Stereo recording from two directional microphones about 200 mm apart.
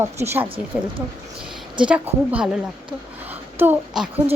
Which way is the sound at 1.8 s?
5° right (ahead or behind).